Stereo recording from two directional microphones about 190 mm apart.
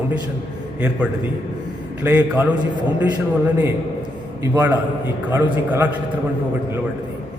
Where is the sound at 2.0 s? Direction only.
10° right (ahead or behind).